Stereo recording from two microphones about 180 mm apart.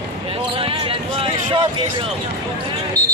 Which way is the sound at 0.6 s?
30° right (ahead or behind).